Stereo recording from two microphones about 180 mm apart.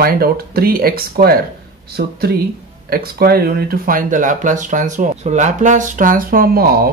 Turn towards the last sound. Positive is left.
turn(degrees=-55)  # may be behind; listen again after turning